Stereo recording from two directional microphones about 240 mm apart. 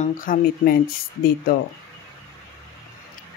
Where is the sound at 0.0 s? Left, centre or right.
Left.